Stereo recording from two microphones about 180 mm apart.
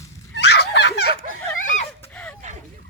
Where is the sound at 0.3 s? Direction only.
65° left (ahead or behind).